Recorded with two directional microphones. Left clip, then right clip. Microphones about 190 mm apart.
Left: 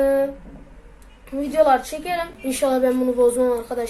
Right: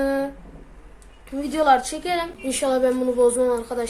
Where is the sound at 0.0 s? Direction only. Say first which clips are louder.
Left 5 dB; 15° right (ahead or behind).